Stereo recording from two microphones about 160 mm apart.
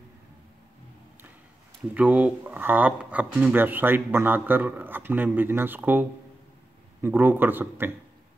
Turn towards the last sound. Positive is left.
turn(degrees=-10)  # may be behind; listen again after turning